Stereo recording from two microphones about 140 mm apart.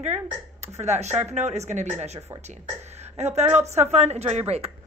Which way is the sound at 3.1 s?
50° right (ahead or behind).